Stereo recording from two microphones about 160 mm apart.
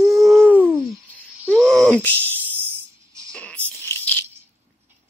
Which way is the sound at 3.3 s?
10° left (ahead or behind).